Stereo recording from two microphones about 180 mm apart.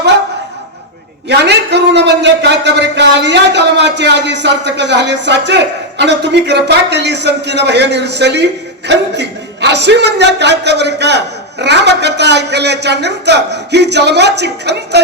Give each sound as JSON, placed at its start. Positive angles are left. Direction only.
{"t": 1.3, "sound": "a man's voice", "side_deg": -70}